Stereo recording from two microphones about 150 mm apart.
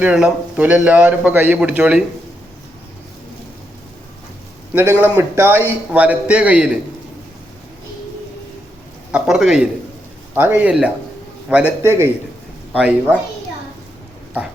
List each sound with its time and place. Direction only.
0.0 s a man's voice: 10° right (ahead or behind)
4.7 s a man's voice: 15° right (ahead or behind)
9.1 s a man's voice: 5° right (ahead or behind)